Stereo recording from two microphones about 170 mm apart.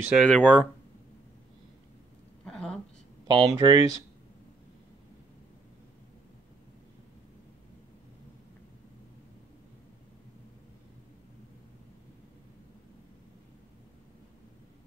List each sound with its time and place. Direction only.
0.0 s speech: 5° right (ahead or behind)
0.3 s speech: 5° left (ahead or behind)
2.4 s a sound: 5° left (ahead or behind)
3.3 s speech: 25° right (ahead or behind)